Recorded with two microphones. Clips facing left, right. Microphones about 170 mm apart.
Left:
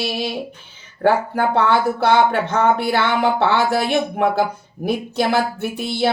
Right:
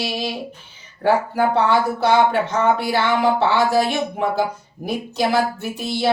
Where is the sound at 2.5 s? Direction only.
60° left (ahead or behind).